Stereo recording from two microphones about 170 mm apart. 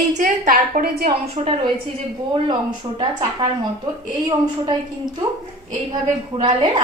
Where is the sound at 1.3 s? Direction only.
35° right (ahead or behind).